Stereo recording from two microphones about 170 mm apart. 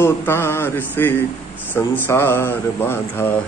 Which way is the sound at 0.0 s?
15° left (ahead or behind).